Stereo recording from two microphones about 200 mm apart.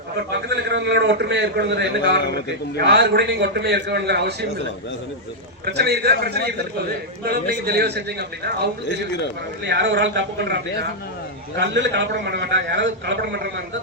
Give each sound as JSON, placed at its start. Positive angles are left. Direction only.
{"t": 0.3, "sound": "a man's voice", "side_deg": -55}
{"t": 5.6, "sound": "a man's voice", "side_deg": -55}
{"t": 9.6, "sound": "a man's voice", "side_deg": -60}
{"t": 11.6, "sound": "a man's voice", "side_deg": -65}